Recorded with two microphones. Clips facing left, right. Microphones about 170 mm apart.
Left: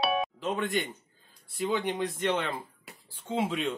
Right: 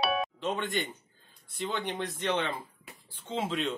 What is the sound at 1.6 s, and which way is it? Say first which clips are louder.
Speech: left 4 dB; 10° left (ahead or behind).